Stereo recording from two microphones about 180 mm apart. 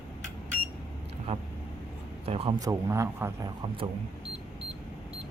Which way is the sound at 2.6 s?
15° right (ahead or behind).